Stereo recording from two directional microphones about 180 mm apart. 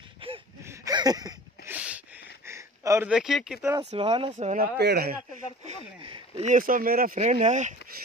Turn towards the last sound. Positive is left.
turn(degrees=-40)  # may be behind; listen again after turning